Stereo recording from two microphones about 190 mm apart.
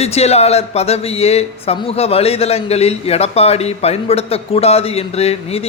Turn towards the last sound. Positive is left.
turn(degrees=30)  # may be behind; listen again after turning